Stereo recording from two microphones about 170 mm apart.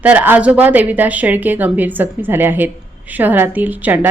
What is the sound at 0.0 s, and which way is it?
A woman's voice, 10° right (ahead or behind).